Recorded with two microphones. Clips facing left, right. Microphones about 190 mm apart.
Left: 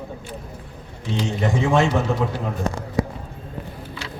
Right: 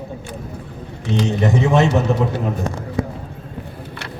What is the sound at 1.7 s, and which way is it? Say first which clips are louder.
Speech: right 3 dB; 20° right (ahead or behind).